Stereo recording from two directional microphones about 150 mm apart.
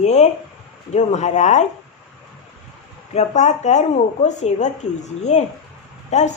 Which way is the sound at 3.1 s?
50° left (ahead or behind).